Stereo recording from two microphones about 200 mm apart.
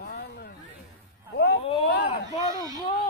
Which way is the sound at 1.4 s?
55° left (ahead or behind).